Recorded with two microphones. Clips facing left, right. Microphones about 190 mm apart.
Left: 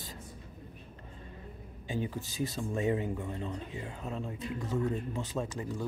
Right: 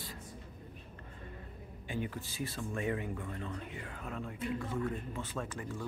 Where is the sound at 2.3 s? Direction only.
20° left (ahead or behind).